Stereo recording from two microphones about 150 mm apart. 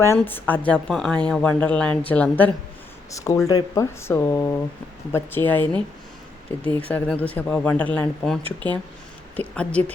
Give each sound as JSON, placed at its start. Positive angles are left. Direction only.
{"t": 0.0, "sound": "speech", "side_deg": 15}
{"t": 3.1, "sound": "speech", "side_deg": 20}